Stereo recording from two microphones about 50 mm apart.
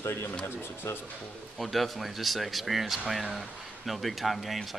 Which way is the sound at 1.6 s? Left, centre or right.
Centre.